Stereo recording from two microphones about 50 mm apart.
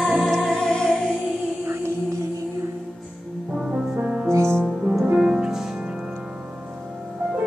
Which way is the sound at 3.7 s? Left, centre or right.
Right.